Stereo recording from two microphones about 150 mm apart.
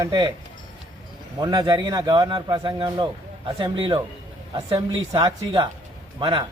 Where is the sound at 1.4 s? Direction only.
25° right (ahead or behind).